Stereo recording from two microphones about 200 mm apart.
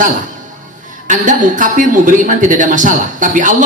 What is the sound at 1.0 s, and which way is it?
A man's voice, 40° right (ahead or behind).